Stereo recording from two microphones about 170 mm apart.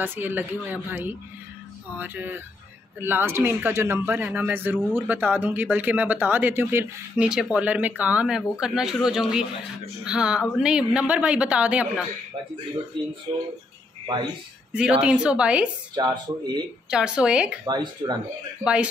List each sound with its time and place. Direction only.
0.0 s speech: 10° right (ahead or behind)
14.7 s speech: 5° right (ahead or behind)
15.9 s speech: 25° right (ahead or behind)
16.9 s a woman's voice: 5° right (ahead or behind)
17.6 s speech: 25° right (ahead or behind)
18.6 s speech: 5° right (ahead or behind)